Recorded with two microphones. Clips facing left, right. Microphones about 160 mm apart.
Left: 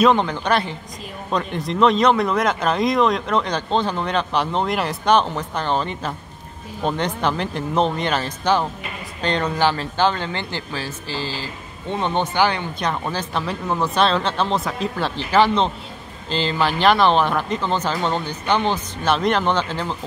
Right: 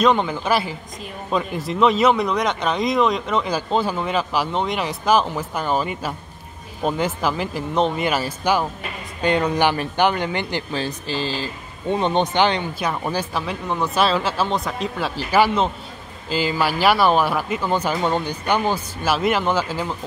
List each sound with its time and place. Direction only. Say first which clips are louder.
0.0 s speech: left 1 dB; centre (ahead or behind); by 12.6 s 20° right (ahead or behind)
12.7 s speech: right 1 dB; 10° right (ahead or behind)